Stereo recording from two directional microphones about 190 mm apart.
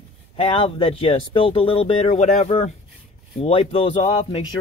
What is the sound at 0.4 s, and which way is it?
Speech, 30° left (ahead or behind).